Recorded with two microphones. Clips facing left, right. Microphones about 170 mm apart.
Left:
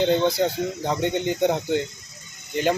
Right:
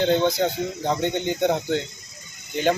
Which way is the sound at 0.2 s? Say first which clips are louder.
Even; 10° left (ahead or behind).